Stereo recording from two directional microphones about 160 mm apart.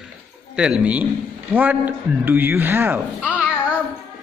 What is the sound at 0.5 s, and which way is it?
A man's voice, 5° right (ahead or behind).